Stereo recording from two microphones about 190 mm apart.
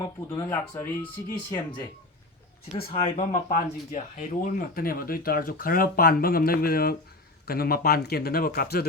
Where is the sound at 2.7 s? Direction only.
30° left (ahead or behind); by 8.9 s 55° left (ahead or behind).